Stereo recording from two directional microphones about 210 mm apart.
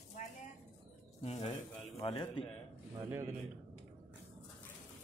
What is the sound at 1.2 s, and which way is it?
A man's voice, 30° left (ahead or behind).